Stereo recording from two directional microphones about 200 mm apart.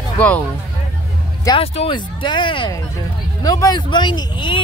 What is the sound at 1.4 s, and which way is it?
Speech, 25° left (ahead or behind).